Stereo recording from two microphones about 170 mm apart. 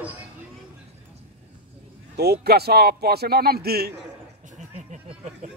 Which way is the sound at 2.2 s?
70° right (ahead or behind).